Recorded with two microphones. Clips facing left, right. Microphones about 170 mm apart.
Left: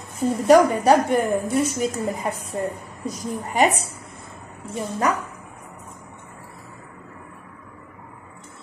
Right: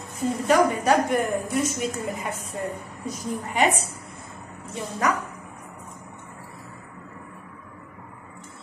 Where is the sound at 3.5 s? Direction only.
40° left (ahead or behind).